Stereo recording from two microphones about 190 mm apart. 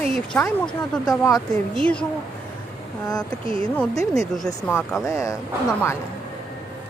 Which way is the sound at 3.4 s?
30° right (ahead or behind).